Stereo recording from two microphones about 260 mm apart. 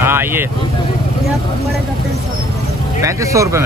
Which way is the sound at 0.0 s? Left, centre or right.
Centre.